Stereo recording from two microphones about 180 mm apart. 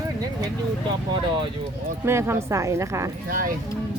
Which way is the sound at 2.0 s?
15° right (ahead or behind).